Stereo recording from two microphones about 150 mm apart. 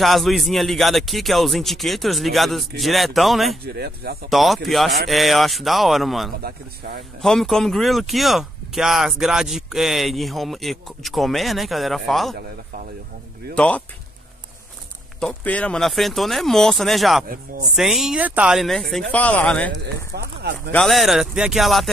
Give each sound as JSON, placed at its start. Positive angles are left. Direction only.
{"t": 0.0, "sound": "speech", "side_deg": 0}
{"t": 3.6, "sound": "speech", "side_deg": -90}
{"t": 4.3, "sound": "speech", "side_deg": 0}
{"t": 6.4, "sound": "speech", "side_deg": -90}
{"t": 7.2, "sound": "speech", "side_deg": 5}
{"t": 13.6, "sound": "speech", "side_deg": 10}
{"t": 15.1, "sound": "speech", "side_deg": 5}
{"t": 20.2, "sound": "speech", "side_deg": -90}
{"t": 20.7, "sound": "speech", "side_deg": 0}